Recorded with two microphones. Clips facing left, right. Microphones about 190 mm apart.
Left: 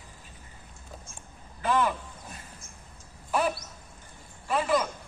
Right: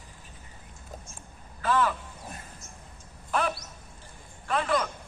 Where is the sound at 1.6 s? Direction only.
15° left (ahead or behind).